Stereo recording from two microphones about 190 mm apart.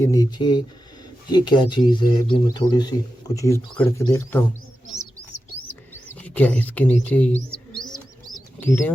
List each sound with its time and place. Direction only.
0.0 s speech: 20° left (ahead or behind)
5.6 s bird: 10° left (ahead or behind)